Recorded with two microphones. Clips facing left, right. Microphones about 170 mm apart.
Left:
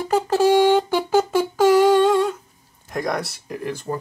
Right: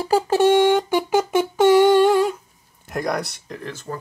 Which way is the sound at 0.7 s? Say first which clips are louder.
Left 1 dB; 15° right (ahead or behind).